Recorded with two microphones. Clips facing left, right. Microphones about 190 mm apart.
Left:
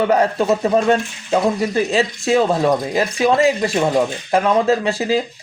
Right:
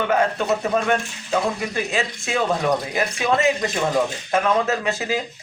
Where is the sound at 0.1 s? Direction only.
35° left (ahead or behind).